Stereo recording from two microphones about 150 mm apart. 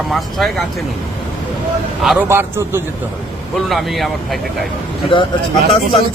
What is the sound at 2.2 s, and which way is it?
Speech, 15° right (ahead or behind).